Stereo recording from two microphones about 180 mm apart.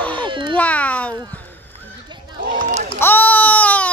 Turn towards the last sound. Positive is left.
turn(degrees=10)  # may be behind; listen again after turning